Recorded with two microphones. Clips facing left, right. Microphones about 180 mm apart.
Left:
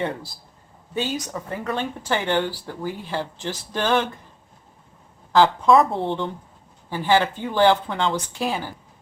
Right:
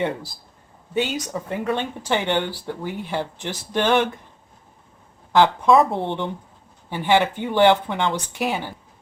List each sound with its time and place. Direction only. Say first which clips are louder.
1.0 s speech: right 1 dB; 20° right (ahead or behind)
5.6 s speech: even; centre (ahead or behind)
5.9 s speech: even; 20° right (ahead or behind)